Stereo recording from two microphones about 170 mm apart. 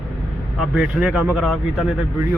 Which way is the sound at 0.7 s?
5° right (ahead or behind).